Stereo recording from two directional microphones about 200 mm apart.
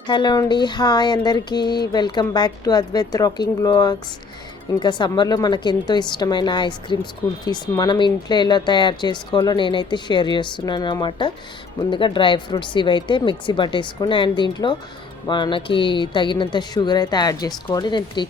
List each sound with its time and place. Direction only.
0.1 s a woman's voice: 20° left (ahead or behind)